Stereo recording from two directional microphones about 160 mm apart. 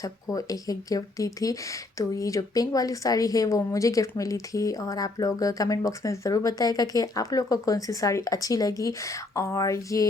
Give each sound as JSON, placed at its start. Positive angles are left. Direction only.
{"t": 0.0, "sound": "speech", "side_deg": 20}